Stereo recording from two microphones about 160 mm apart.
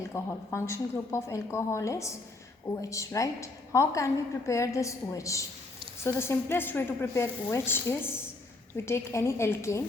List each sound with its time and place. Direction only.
0.1 s a woman's voice: 15° left (ahead or behind)